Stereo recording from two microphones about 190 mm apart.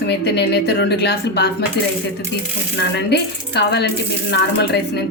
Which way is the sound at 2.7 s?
60° left (ahead or behind).